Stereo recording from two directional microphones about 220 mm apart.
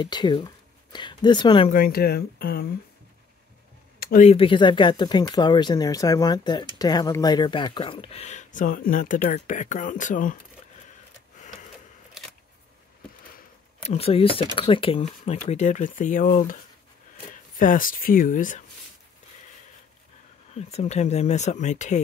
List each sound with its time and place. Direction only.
0.0 s speech: 20° left (ahead or behind)
1.7 s speech: 40° left (ahead or behind)
4.0 s a sound: 40° left (ahead or behind)
4.3 s speech: 25° left (ahead or behind)
13.8 s speech: 25° left (ahead or behind)
17.6 s speech: 40° left (ahead or behind)
20.5 s speech: 30° left (ahead or behind)